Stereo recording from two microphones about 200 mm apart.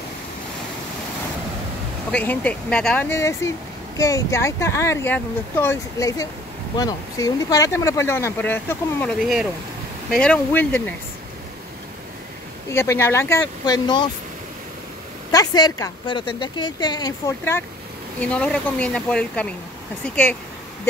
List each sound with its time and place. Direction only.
2.0 s speech: 5° left (ahead or behind)
12.7 s speech: 10° left (ahead or behind)
15.3 s a woman's voice: 20° left (ahead or behind)